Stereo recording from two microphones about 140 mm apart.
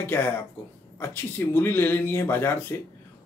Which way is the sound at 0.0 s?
15° left (ahead or behind).